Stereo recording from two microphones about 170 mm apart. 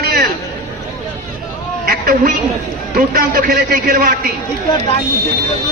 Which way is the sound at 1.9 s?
60° right (ahead or behind).